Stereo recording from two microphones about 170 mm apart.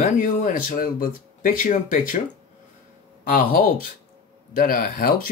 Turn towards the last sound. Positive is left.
turn(degrees=60)  # may be behind; listen again after turning